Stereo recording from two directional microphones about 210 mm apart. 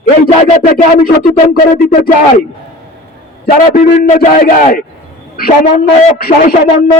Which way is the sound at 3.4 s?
35° left (ahead or behind).